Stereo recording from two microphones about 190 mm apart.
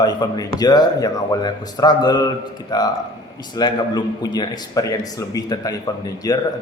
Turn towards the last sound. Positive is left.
turn(degrees=20)  # may be behind; listen again after turning